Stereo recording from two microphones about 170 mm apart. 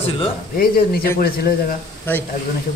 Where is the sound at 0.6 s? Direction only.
60° left (ahead or behind).